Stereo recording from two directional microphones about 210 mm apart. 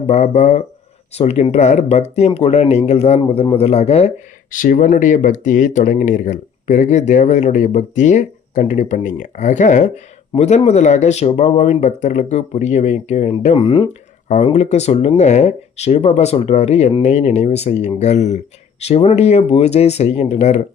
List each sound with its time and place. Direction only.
0.1 s a man's voice: 30° left (ahead or behind)